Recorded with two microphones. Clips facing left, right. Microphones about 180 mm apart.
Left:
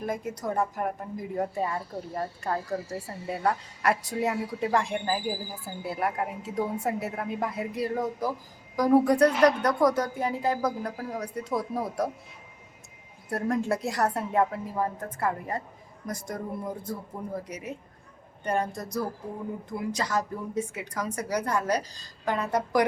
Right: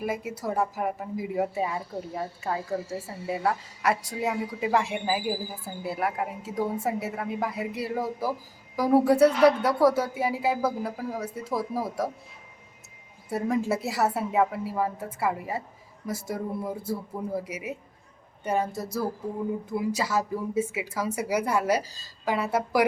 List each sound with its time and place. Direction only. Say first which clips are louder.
0.0 s speech: right 1 dB; 5° right (ahead or behind)
13.3 s a woman's voice: right 1 dB; 5° right (ahead or behind)